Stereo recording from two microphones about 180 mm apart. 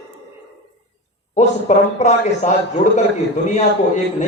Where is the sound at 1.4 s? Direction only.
40° left (ahead or behind).